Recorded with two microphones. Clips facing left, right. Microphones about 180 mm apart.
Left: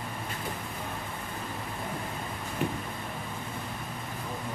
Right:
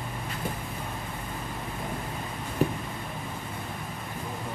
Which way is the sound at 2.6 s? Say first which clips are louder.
Right 5 dB; 35° right (ahead or behind).